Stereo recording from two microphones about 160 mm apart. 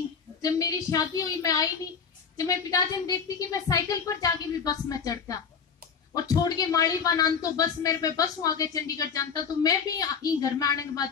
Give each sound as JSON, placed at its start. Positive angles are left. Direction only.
{"t": 0.4, "sound": "speech", "side_deg": 20}